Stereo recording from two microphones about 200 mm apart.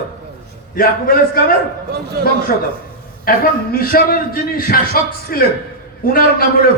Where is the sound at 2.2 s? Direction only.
50° right (ahead or behind).